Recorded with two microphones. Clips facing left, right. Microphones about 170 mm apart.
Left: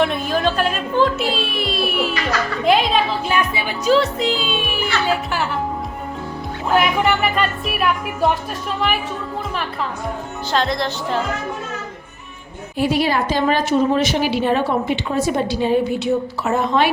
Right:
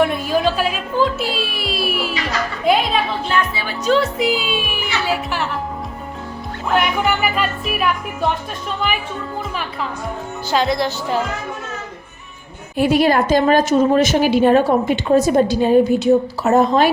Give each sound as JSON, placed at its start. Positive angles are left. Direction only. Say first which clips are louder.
{"t": 0.0, "sound": "music", "louder": "right 2 dB", "side_deg": -5}
{"t": 3.2, "sound": "speech", "louder": "even", "side_deg": 15}
{"t": 3.9, "sound": "music", "louder": "right 1 dB", "side_deg": -10}
{"t": 6.7, "sound": "music", "louder": "left 1 dB", "side_deg": 0}
{"t": 10.5, "sound": "music", "louder": "right 2 dB", "side_deg": -5}
{"t": 12.7, "sound": "a woman's voice", "louder": "right 4 dB", "side_deg": -50}